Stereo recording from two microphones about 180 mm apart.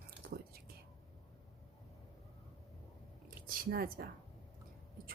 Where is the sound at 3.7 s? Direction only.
55° right (ahead or behind).